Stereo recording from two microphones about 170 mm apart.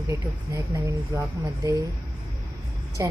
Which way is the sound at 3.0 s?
20° right (ahead or behind).